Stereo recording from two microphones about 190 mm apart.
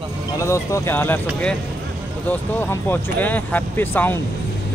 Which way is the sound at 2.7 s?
10° left (ahead or behind).